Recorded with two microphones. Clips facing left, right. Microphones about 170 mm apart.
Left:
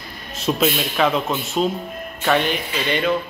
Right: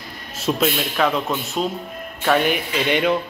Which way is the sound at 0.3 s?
Centre (ahead or behind).